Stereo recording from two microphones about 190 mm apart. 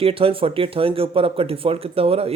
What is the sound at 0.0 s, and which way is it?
Speech, 30° right (ahead or behind).